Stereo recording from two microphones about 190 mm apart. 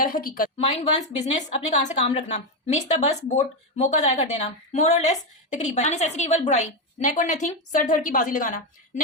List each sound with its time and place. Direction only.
0.0 s a woman's voice: 45° left (ahead or behind)
0.6 s a woman's voice: 35° left (ahead or behind)